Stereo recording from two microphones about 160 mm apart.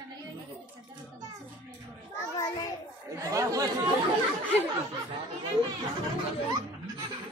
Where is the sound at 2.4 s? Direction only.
20° left (ahead or behind).